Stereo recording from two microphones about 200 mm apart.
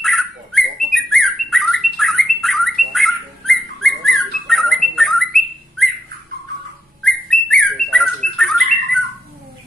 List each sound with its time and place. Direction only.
0.0 s bird: centre (ahead or behind)
7.0 s bird: 5° left (ahead or behind)